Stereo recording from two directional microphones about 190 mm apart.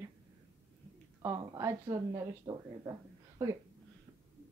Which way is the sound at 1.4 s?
15° right (ahead or behind).